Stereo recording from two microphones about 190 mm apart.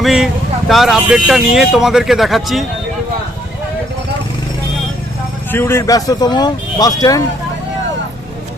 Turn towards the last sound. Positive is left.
turn(degrees=20)  # may be behind; listen again after turning